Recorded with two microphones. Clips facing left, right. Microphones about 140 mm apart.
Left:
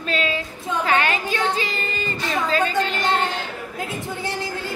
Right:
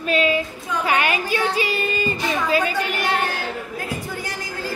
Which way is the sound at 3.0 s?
20° left (ahead or behind).